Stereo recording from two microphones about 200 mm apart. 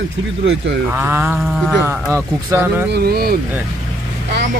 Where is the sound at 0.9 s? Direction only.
10° right (ahead or behind).